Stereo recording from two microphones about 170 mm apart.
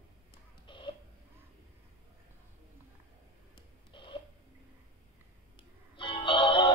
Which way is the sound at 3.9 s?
30° left (ahead or behind).